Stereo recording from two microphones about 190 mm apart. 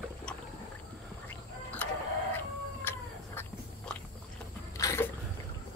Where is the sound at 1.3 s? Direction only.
10° left (ahead or behind).